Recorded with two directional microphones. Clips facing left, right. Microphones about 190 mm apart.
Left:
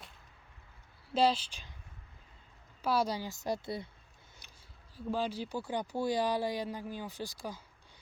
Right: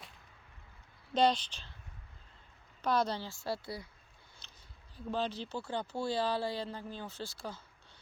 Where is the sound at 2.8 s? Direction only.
10° left (ahead or behind).